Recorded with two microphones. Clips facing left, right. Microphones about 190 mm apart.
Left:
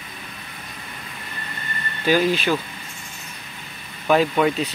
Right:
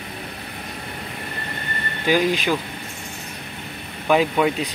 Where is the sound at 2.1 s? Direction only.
15° right (ahead or behind).